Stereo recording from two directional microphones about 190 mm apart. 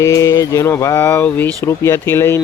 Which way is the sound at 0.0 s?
15° left (ahead or behind).